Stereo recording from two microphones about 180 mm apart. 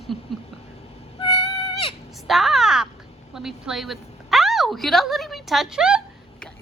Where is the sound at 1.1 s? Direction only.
20° left (ahead or behind).